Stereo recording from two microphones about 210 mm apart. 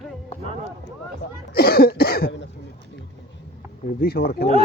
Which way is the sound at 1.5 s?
45° left (ahead or behind).